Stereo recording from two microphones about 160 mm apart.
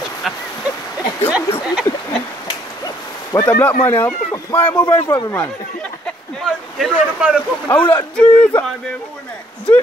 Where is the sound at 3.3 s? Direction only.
15° left (ahead or behind).